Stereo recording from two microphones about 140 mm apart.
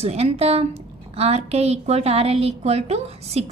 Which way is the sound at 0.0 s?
45° right (ahead or behind).